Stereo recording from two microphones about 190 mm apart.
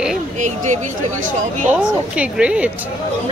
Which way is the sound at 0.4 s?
40° right (ahead or behind).